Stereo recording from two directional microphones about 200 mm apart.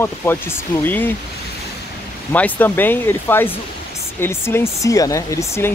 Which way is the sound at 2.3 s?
5° left (ahead or behind).